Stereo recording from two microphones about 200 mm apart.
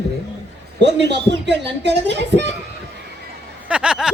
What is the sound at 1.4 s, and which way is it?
Speech, 60° right (ahead or behind).